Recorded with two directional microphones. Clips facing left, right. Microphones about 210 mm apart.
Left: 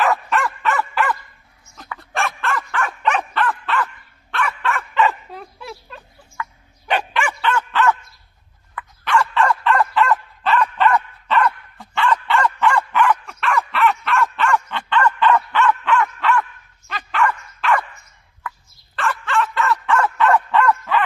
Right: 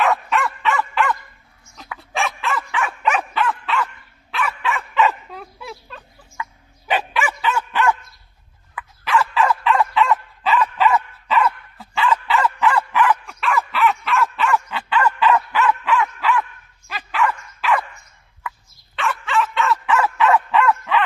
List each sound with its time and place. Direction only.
0.0 s dog: centre (ahead or behind)
6.4 s dog: 20° right (ahead or behind)
6.9 s dog: 5° right (ahead or behind)
8.7 s dog: centre (ahead or behind)
18.9 s bow-wow: centre (ahead or behind)